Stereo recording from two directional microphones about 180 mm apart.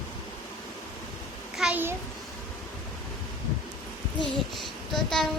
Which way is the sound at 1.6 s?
10° right (ahead or behind).